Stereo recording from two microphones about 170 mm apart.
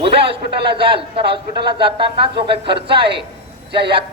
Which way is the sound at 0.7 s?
30° right (ahead or behind).